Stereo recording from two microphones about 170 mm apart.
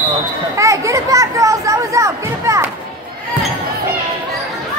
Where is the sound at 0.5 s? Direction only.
20° right (ahead or behind).